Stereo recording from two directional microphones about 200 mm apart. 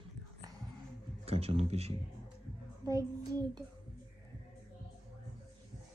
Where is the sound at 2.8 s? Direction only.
20° right (ahead or behind).